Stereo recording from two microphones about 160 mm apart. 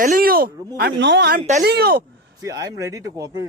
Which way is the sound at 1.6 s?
85° right.